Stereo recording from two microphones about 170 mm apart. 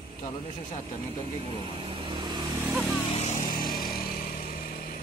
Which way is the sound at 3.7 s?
60° left (ahead or behind).